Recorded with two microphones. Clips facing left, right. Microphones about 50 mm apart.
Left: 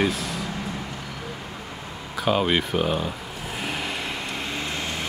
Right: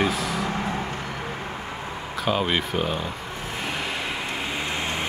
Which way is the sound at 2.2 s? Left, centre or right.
Centre.